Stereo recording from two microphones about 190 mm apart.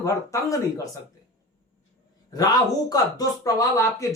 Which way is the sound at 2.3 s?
20° left (ahead or behind).